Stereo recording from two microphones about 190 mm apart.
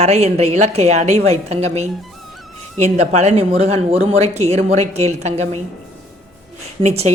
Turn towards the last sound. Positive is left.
turn(degrees=-35)  # may be behind; listen again after turning